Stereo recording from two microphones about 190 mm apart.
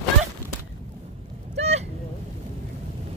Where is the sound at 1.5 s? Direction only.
35° right (ahead or behind).